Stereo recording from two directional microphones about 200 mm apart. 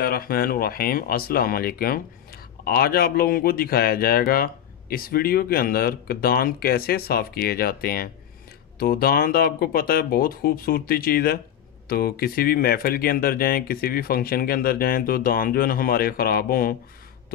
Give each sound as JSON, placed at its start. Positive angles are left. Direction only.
{"t": 0.0, "sound": "speech", "side_deg": 50}